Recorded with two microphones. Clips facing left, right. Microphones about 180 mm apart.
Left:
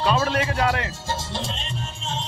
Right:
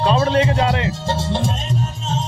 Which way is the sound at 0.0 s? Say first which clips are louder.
Right 6 dB; 30° right (ahead or behind).